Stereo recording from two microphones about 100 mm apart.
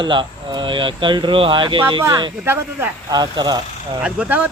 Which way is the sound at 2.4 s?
25° right (ahead or behind).